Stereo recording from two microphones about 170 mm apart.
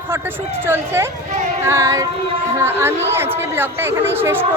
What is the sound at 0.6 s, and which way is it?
A woman's voice, 15° right (ahead or behind).